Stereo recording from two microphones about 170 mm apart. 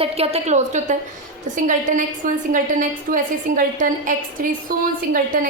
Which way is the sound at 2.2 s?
50° right (ahead or behind).